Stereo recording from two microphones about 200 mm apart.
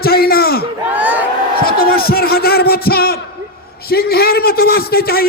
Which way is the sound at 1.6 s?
50° left (ahead or behind).